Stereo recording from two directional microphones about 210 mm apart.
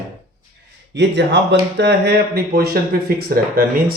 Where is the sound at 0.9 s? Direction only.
55° right (ahead or behind).